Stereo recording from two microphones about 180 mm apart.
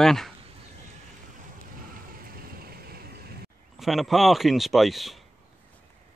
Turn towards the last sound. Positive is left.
turn(degrees=0)  # may be behind; listen again after turning